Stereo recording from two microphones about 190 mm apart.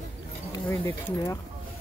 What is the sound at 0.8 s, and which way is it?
Speech, 15° left (ahead or behind).